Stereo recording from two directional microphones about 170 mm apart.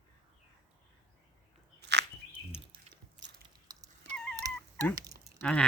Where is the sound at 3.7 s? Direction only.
25° right (ahead or behind).